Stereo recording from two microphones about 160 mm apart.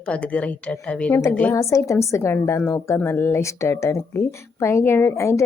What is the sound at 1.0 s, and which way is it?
A woman's voice, 10° left (ahead or behind).